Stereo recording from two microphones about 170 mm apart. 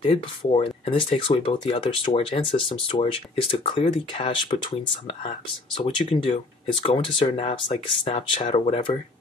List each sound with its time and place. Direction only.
0.0 s speech: 30° left (ahead or behind)